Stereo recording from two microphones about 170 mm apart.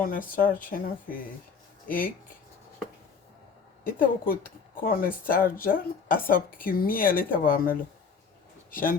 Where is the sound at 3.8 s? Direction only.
55° left (ahead or behind).